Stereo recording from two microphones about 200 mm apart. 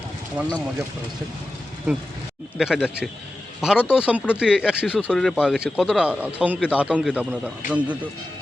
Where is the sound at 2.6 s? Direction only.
5° right (ahead or behind).